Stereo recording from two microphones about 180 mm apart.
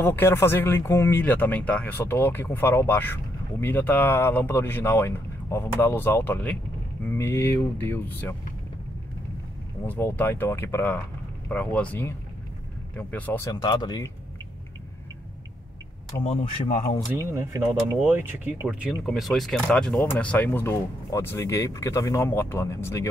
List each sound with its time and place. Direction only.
0.0 s speech: 10° left (ahead or behind)
9.8 s speech: 10° left (ahead or behind)
13.5 s speech: 25° left (ahead or behind)
16.3 s speech: 45° left (ahead or behind)
17.2 s speech: 15° right (ahead or behind); by 23.0 s 15° left (ahead or behind)